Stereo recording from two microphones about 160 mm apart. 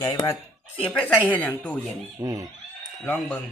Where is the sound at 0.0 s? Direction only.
20° left (ahead or behind).